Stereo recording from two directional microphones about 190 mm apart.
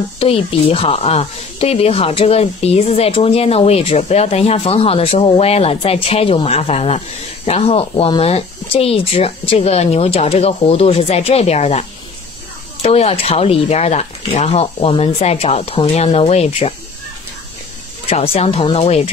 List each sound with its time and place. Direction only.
0.2 s speech: 30° left (ahead or behind)
12.8 s speech: 30° left (ahead or behind)
18.1 s speech: 35° left (ahead or behind)